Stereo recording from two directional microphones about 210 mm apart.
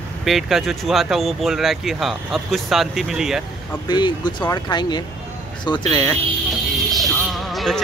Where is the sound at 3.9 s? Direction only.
20° left (ahead or behind).